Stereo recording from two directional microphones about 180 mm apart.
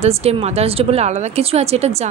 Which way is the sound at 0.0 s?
35° right (ahead or behind).